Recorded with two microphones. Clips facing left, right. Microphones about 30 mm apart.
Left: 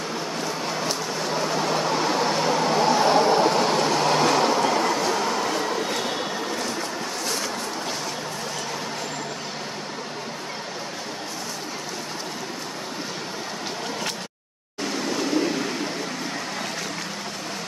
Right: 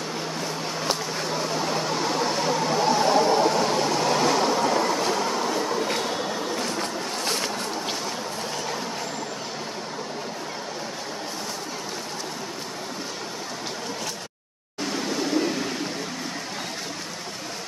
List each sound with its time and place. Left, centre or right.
1.4 s vehicle: centre
5.1 s train: centre
6.0 s a sound: centre